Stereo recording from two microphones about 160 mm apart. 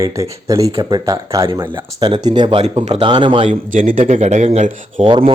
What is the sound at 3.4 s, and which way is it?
Speech, 50° right (ahead or behind).